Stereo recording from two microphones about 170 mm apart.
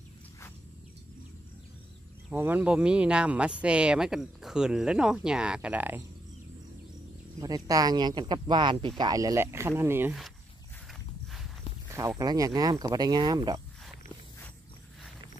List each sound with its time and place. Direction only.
2.3 s speech: 10° right (ahead or behind)
7.3 s speech: 20° right (ahead or behind)
10.9 s walk: centre (ahead or behind)
12.2 s speech: 20° right (ahead or behind)